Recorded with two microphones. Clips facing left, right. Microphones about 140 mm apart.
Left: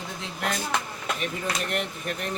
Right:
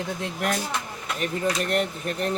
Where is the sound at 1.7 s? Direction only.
40° right (ahead or behind).